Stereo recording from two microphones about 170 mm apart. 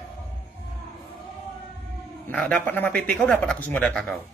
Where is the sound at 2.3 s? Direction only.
5° left (ahead or behind).